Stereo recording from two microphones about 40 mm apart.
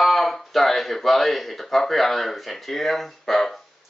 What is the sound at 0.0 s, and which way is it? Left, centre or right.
Speech, centre.